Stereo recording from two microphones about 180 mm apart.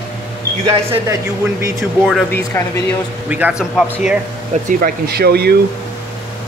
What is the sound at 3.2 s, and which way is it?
Speech, 10° right (ahead or behind).